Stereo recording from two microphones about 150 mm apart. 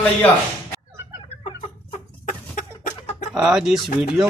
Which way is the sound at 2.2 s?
60° left (ahead or behind).